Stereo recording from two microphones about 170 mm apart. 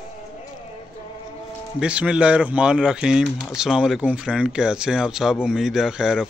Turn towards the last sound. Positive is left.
turn(degrees=-5)  # may be behind; listen again after turning